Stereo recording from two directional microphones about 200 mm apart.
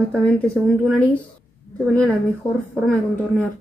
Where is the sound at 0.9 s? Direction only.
5° left (ahead or behind).